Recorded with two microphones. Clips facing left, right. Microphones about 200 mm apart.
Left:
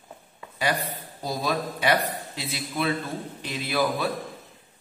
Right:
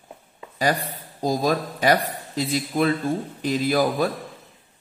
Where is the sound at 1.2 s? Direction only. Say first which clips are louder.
Right 6 dB; 45° right (ahead or behind).